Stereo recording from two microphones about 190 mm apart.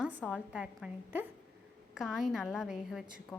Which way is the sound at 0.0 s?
5° right (ahead or behind).